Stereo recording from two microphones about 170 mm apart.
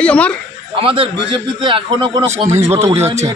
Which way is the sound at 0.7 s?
30° right (ahead or behind).